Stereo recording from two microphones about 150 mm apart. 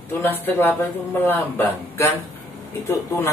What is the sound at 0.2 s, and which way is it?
A man's voice, 15° left (ahead or behind).